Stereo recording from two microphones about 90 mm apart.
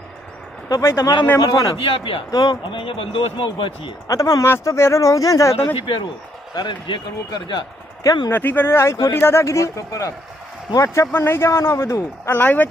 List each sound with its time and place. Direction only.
0.7 s speech: 40° left (ahead or behind)
1.8 s speech: 80° left
2.3 s speech: 50° left (ahead or behind)
2.8 s speech: 90° left; by 3.9 s 75° left (ahead or behind)
4.1 s speech: 35° left (ahead or behind)
5.8 s speech: 70° left (ahead or behind)
6.5 s a man's voice: 55° left (ahead or behind)
8.0 s speech: 45° left (ahead or behind)
8.3 s a man's voice: 20° left (ahead or behind); by 11.1 s 40° left (ahead or behind)
11.1 s a man's voice: 25° left (ahead or behind)